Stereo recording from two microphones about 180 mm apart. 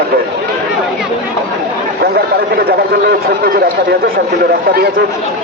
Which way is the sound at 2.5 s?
60° right (ahead or behind).